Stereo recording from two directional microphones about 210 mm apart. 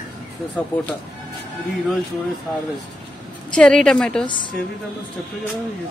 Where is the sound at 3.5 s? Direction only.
5° left (ahead or behind).